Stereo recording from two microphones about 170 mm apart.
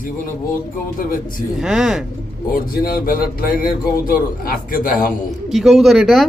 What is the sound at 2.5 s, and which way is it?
Speech, 60° left (ahead or behind).